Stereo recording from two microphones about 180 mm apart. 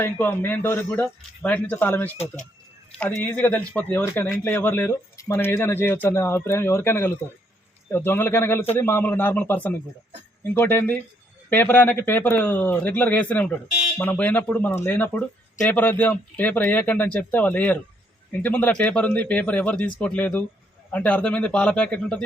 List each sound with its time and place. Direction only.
0.0 s speech: 10° left (ahead or behind)
2.1 s speech: 40° left (ahead or behind)
3.0 s speech: 10° left (ahead or behind)